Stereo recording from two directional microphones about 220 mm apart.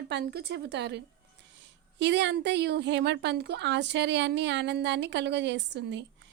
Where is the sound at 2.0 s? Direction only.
55° right (ahead or behind).